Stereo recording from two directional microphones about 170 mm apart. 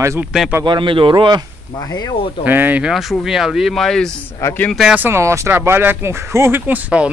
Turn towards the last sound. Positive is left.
turn(degrees=-10)  # may be behind; listen again after turning